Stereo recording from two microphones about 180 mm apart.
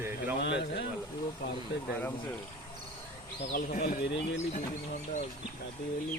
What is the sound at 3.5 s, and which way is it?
Speech, 55° left (ahead or behind).